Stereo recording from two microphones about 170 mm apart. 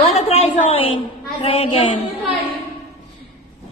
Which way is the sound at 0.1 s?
35° left (ahead or behind).